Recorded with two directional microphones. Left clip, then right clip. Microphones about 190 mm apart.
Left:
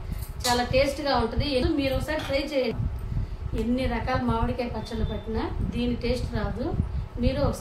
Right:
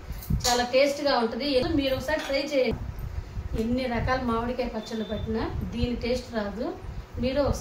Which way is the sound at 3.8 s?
30° left (ahead or behind).